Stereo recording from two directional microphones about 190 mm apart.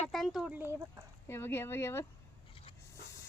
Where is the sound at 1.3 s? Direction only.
10° left (ahead or behind).